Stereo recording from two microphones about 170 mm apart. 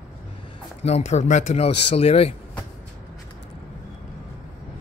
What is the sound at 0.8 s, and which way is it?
Speech, 40° left (ahead or behind).